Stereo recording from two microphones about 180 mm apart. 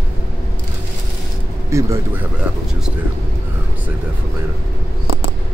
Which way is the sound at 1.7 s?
15° right (ahead or behind).